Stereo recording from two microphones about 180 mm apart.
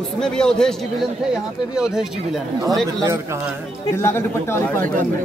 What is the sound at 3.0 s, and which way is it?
Speech, 15° right (ahead or behind).